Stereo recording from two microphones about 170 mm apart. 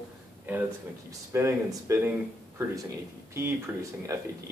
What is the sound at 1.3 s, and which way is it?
Speech, 15° right (ahead or behind).